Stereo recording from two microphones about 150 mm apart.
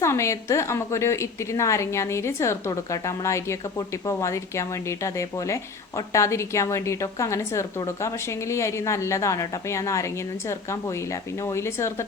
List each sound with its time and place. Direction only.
0.0 s a woman's voice: 20° left (ahead or behind)